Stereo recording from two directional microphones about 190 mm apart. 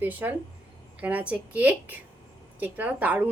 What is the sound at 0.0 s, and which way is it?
A woman's voice, 10° right (ahead or behind).